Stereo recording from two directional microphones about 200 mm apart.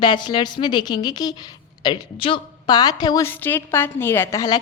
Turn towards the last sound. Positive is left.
turn(degrees=20)  # may be behind; listen again after turning